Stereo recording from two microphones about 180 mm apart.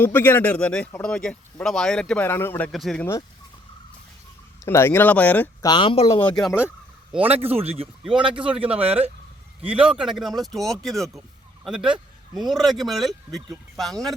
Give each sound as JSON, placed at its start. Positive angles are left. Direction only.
{"t": 0.0, "sound": "speech", "side_deg": 10}
{"t": 2.7, "sound": "speech", "side_deg": 0}
{"t": 4.6, "sound": "speech", "side_deg": 15}
{"t": 5.6, "sound": "speech", "side_deg": 25}
{"t": 6.2, "sound": "speech", "side_deg": 0}
{"t": 7.2, "sound": "speech", "side_deg": -35}
{"t": 9.9, "sound": "speech", "side_deg": -5}